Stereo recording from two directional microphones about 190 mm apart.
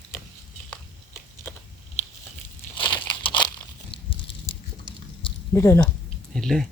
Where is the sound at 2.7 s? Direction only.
25° left (ahead or behind).